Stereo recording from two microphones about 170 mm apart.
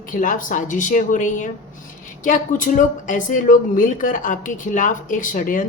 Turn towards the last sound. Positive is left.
turn(degrees=50)  # may be behind; listen again after turning